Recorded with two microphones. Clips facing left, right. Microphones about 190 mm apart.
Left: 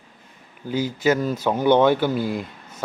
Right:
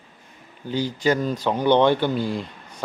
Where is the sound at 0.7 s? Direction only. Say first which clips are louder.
Left 1 dB; 10° left (ahead or behind).